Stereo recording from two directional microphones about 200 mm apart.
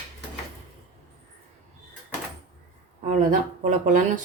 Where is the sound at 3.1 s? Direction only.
40° right (ahead or behind).